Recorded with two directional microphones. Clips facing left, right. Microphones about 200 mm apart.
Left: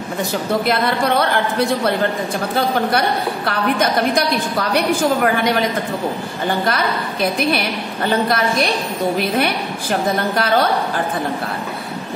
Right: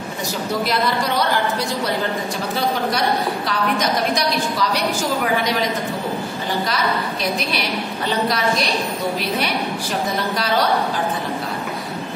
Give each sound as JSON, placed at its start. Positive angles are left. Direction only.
{"t": 0.7, "sound": "a woman's voice", "side_deg": 55}
{"t": 3.4, "sound": "a woman's voice", "side_deg": 55}
{"t": 6.6, "sound": "a woman's voice", "side_deg": 55}
{"t": 9.4, "sound": "a woman's voice", "side_deg": 55}